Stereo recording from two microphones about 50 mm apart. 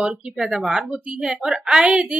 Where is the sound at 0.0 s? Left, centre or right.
Centre.